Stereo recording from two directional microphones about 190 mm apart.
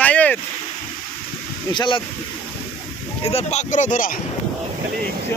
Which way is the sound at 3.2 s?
35° left (ahead or behind).